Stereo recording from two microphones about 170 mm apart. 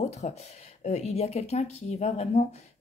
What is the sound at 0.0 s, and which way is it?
Speech, 40° left (ahead or behind).